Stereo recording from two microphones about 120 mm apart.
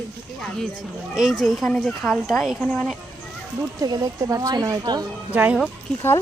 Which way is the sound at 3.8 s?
35° right (ahead or behind).